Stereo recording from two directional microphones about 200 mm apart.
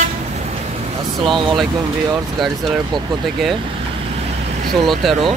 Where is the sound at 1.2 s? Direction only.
25° right (ahead or behind).